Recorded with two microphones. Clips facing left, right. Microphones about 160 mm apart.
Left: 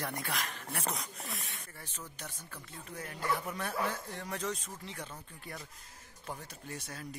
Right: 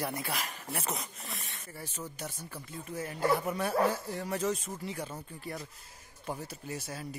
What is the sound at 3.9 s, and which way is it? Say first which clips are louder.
Speech: right 6 dB; 10° right (ahead or behind).